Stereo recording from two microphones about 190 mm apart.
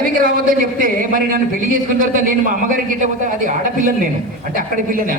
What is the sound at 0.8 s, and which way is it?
A man's voice, 45° right (ahead or behind).